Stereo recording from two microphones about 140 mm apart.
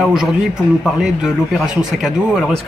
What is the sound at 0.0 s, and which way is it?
Speech, 5° right (ahead or behind).